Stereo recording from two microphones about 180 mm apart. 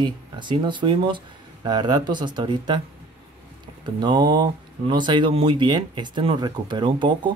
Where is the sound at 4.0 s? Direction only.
25° right (ahead or behind).